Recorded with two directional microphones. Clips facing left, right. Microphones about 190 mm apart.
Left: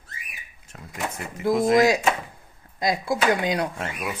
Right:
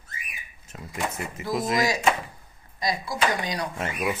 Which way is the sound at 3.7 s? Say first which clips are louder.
Right 3 dB; 5° right (ahead or behind).